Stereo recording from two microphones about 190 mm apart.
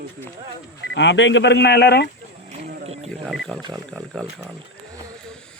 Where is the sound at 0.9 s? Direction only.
75° left (ahead or behind).